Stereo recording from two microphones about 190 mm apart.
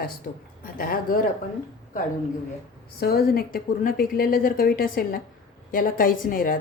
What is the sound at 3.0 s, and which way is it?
A woman's voice, 55° left (ahead or behind).